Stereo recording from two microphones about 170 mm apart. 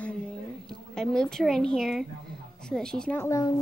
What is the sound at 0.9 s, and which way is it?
A child's voice, 5° left (ahead or behind).